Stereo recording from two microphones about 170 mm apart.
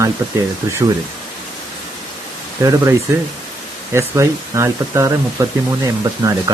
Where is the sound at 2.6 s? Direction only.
20° right (ahead or behind).